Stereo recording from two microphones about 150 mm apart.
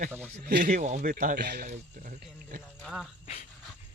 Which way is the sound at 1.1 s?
80° right.